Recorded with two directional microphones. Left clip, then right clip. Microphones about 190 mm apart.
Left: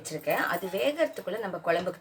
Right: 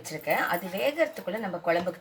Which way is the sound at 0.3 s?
25° left (ahead or behind).